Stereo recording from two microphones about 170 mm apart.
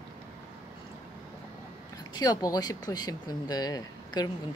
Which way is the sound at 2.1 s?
20° left (ahead or behind).